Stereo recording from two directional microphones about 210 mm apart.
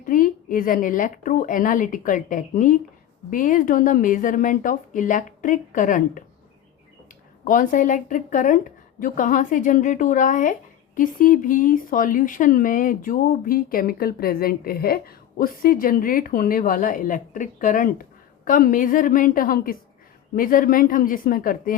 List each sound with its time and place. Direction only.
0.0 s a woman's voice: 40° left (ahead or behind)
7.4 s a woman's voice: 40° left (ahead or behind)